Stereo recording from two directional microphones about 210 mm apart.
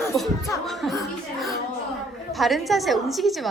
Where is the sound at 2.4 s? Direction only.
Centre (ahead or behind).